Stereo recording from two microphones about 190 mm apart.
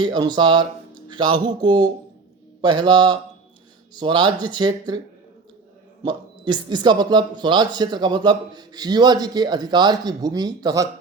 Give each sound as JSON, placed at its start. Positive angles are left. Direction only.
{"t": 0.0, "sound": "a man's voice", "side_deg": -20}
{"t": 6.0, "sound": "a man's voice", "side_deg": -25}